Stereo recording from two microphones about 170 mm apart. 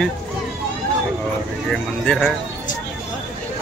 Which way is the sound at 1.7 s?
Centre (ahead or behind).